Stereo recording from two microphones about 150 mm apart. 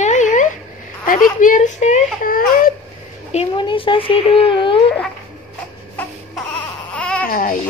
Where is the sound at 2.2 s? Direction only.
70° left (ahead or behind).